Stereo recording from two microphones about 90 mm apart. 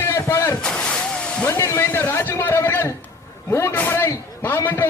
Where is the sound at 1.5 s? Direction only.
35° left (ahead or behind).